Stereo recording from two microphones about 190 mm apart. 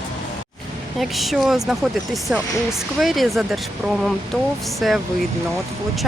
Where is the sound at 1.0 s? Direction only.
Centre (ahead or behind).